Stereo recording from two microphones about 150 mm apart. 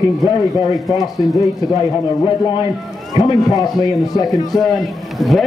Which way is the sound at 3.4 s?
Centre (ahead or behind).